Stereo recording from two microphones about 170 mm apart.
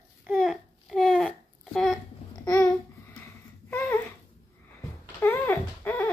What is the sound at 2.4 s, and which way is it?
Babbling, 20° left (ahead or behind).